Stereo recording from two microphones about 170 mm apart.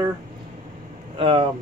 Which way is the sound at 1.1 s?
30° right (ahead or behind).